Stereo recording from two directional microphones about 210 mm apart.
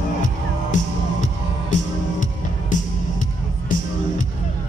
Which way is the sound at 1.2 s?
35° left (ahead or behind).